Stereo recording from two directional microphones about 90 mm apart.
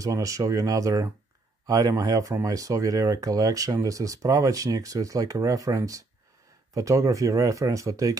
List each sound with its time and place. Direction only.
0.0 s speech: 40° right (ahead or behind)